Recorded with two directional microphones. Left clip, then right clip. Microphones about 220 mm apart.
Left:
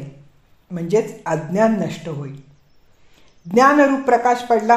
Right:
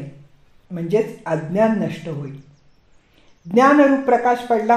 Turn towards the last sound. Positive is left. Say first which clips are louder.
# left 2 dB
turn(degrees=25)  # may be behind; listen again after turning